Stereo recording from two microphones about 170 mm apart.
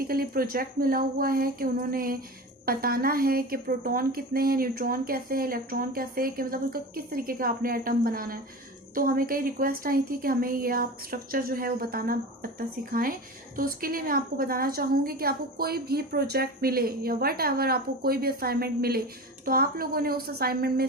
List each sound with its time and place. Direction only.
0.0 s a woman's voice: 60° right (ahead or behind)